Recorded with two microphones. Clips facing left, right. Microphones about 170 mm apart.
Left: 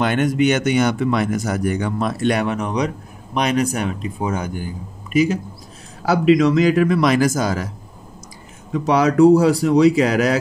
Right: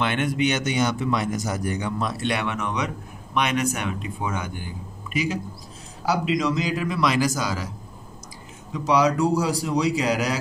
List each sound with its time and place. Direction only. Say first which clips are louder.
0.0 s speech: left 6 dB; 45° left (ahead or behind)
6.0 s speech: left 9 dB; 60° left (ahead or behind)
8.7 s speech: left 5 dB; 55° left (ahead or behind)